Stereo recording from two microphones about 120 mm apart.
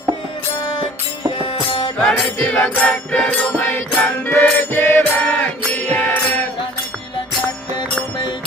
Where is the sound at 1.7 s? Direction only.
50° left (ahead or behind).